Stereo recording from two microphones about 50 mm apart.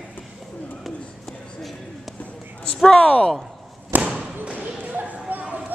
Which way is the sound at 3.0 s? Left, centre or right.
Left.